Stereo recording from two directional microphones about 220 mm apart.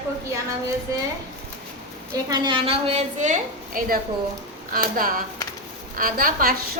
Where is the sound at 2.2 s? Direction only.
20° right (ahead or behind).